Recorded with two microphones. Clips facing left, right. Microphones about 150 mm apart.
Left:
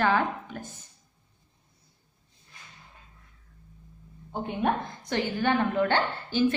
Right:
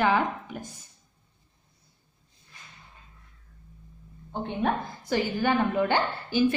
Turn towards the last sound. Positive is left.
turn(degrees=-10)  # may be behind; listen again after turning